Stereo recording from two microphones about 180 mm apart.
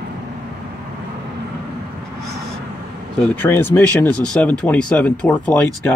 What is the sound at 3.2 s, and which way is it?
Speech, 10° left (ahead or behind).